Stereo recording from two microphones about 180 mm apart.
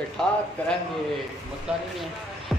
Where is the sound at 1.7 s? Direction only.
5° right (ahead or behind).